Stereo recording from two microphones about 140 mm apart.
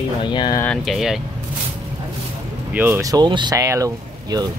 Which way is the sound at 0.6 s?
5° left (ahead or behind).